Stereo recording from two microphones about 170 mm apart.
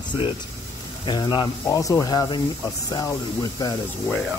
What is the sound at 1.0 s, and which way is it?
Speech, 25° left (ahead or behind).